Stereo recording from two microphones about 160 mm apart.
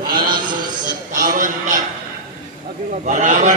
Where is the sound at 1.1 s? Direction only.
55° right (ahead or behind).